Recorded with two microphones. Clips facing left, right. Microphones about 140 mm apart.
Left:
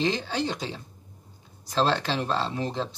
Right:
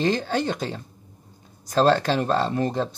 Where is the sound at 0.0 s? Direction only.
50° right (ahead or behind).